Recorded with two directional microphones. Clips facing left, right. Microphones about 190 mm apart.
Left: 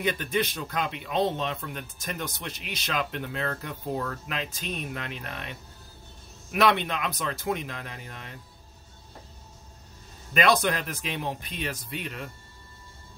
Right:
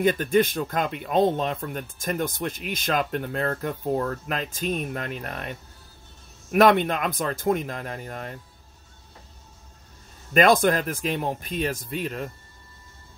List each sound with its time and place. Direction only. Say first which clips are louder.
0.0 s speech: right 7 dB; 45° right (ahead or behind)
10.3 s speech: right 5 dB; 50° right (ahead or behind)